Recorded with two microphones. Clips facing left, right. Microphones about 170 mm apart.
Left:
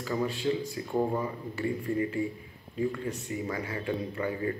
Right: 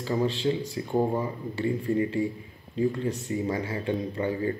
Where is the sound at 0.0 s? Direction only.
30° right (ahead or behind).